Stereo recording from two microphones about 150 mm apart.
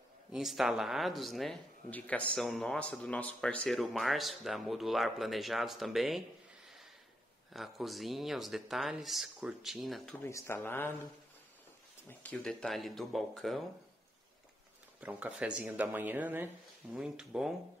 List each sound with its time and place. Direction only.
0.3 s speech: centre (ahead or behind)
7.5 s speech: centre (ahead or behind)
10.2 s speech: 15° left (ahead or behind)
12.1 s speech: 10° left (ahead or behind)
15.0 s speech: 10° right (ahead or behind)